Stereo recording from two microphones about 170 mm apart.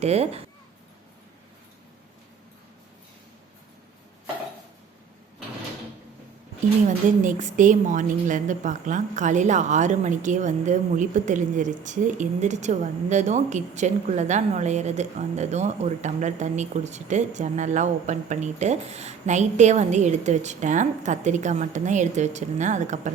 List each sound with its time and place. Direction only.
0.0 s speech: 40° right (ahead or behind)
6.8 s a woman's voice: 50° right (ahead or behind)